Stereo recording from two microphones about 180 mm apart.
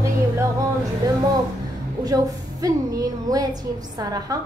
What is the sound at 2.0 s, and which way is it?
A woman's voice, 20° right (ahead or behind).